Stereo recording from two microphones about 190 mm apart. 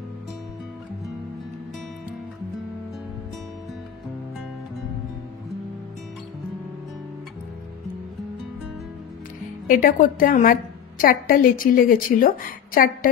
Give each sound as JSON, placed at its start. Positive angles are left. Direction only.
{"t": 9.7, "sound": "a woman's voice", "side_deg": 45}